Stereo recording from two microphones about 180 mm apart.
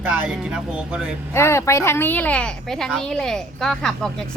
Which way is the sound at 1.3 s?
15° left (ahead or behind).